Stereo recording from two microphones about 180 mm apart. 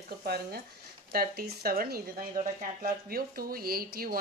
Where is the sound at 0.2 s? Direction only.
60° right (ahead or behind).